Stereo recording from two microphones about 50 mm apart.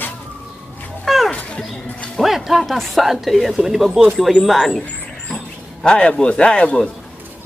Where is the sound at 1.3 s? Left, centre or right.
Left.